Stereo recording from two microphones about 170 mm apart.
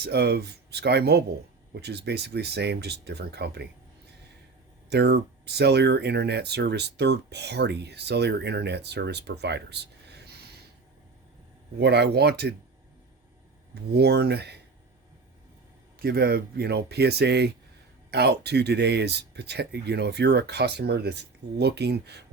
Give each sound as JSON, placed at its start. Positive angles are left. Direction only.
{"t": 0.0, "sound": "speech", "side_deg": -70}
{"t": 4.9, "sound": "speech", "side_deg": -80}
{"t": 11.8, "sound": "speech", "side_deg": -75}
{"t": 13.9, "sound": "speech", "side_deg": -75}
{"t": 16.0, "sound": "speech", "side_deg": -65}